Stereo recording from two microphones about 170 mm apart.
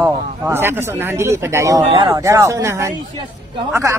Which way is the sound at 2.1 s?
20° right (ahead or behind).